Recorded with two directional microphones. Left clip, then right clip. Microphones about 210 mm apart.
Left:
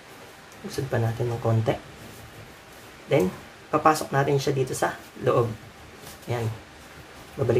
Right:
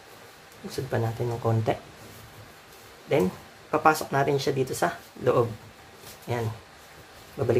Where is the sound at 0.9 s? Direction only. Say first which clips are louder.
Left 1 dB; 15° right (ahead or behind).